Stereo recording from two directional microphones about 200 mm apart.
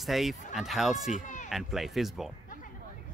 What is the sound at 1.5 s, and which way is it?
Speech, centre (ahead or behind).